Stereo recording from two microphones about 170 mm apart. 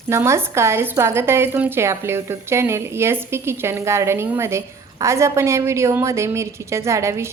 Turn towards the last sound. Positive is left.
turn(degrees=-15)  # may be behind; listen again after turning